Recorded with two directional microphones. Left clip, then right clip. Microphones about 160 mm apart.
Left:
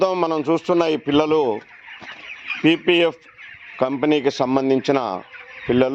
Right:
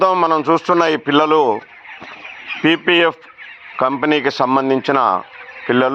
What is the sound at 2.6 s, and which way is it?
A man's voice, 15° left (ahead or behind).